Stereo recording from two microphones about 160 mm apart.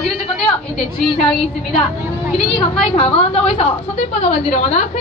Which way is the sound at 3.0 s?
40° left (ahead or behind).